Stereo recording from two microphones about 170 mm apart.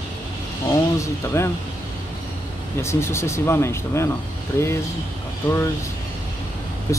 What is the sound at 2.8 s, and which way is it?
Speech, 15° left (ahead or behind).